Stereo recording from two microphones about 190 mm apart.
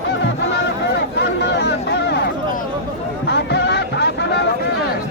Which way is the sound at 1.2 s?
60° left (ahead or behind).